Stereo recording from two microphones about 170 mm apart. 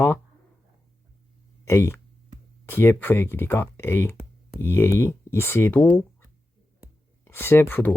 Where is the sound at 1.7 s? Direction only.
15° left (ahead or behind).